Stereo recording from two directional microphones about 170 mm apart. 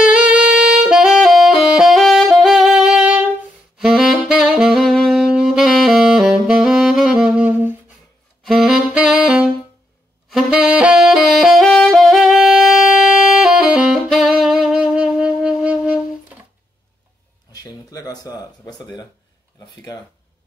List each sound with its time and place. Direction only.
0.3 s saxophone: 5° right (ahead or behind)
17.5 s a sound: 20° left (ahead or behind)
19.6 s speech: 20° left (ahead or behind)